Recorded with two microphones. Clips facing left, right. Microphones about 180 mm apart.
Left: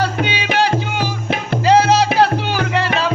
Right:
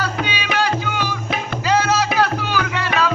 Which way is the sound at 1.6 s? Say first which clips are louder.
Left 6 dB; 30° left (ahead or behind).